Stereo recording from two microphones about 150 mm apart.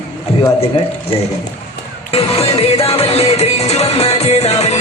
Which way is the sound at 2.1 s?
40° left (ahead or behind).